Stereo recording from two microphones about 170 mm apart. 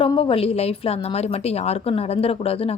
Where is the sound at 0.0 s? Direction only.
30° left (ahead or behind).